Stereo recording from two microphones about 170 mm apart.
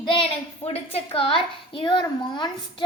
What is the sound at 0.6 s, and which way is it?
A child's voice, 35° left (ahead or behind).